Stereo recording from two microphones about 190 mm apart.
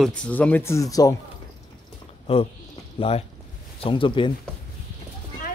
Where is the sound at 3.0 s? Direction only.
30° left (ahead or behind).